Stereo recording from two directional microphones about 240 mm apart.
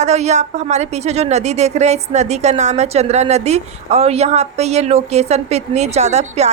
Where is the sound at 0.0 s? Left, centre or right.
Right.